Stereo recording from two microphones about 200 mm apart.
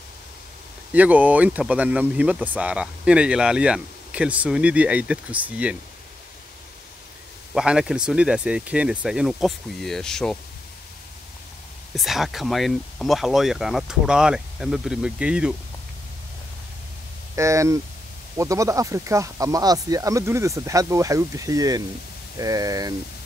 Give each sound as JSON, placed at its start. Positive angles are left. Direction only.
{"t": 0.9, "sound": "speech", "side_deg": -10}
{"t": 7.5, "sound": "speech", "side_deg": -5}
{"t": 11.9, "sound": "speech", "side_deg": 0}
{"t": 17.4, "sound": "speech", "side_deg": -15}